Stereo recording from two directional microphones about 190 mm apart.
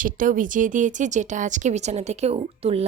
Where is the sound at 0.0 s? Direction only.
45° right (ahead or behind).